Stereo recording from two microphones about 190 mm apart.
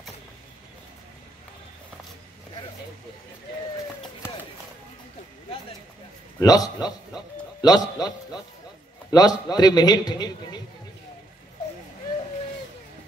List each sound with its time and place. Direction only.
6.4 s a man's voice: 20° left (ahead or behind)
9.1 s a man's voice: 20° left (ahead or behind)